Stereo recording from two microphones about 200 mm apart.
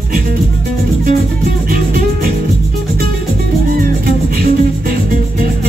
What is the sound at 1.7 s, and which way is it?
Music, 50° right (ahead or behind).